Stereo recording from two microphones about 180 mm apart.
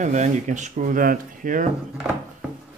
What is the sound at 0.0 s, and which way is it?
Speech, 45° right (ahead or behind).